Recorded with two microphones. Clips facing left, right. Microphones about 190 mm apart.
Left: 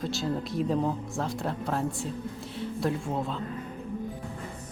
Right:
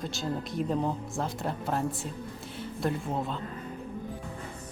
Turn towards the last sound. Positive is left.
turn(degrees=0)  # may be behind; listen again after turning